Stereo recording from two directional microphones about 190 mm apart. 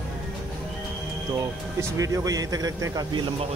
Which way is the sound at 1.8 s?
15° right (ahead or behind).